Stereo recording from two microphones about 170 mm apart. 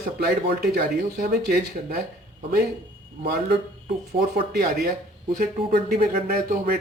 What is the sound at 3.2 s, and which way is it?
Speech, 55° right (ahead or behind).